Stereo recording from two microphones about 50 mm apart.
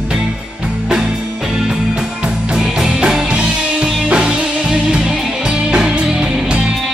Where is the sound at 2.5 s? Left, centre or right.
Centre.